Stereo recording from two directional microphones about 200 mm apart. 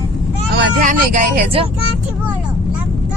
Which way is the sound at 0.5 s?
45° right (ahead or behind).